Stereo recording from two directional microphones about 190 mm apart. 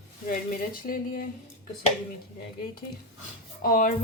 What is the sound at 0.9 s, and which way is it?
Speech, 45° left (ahead or behind).